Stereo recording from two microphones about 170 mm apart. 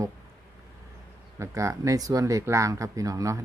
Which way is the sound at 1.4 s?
20° right (ahead or behind).